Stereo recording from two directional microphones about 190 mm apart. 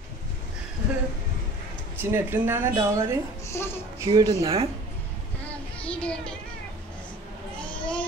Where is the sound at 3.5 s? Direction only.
10° left (ahead or behind).